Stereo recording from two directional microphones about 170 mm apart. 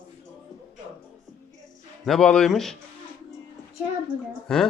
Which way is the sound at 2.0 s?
5° left (ahead or behind).